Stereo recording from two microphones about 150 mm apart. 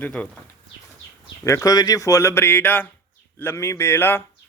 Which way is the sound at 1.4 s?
20° left (ahead or behind).